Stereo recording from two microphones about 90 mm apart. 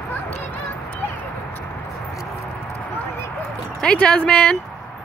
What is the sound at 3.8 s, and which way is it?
Speech, 10° left (ahead or behind).